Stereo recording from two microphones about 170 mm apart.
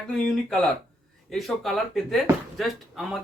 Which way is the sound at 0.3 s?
5° left (ahead or behind).